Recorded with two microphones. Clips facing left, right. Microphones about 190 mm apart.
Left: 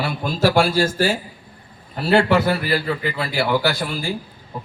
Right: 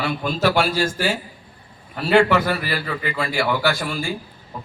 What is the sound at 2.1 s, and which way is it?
Speech, 40° left (ahead or behind).